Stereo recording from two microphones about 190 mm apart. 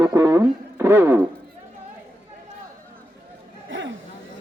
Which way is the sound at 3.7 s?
75° right (ahead or behind).